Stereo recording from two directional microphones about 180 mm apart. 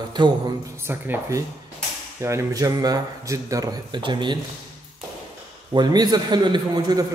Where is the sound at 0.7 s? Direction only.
10° right (ahead or behind).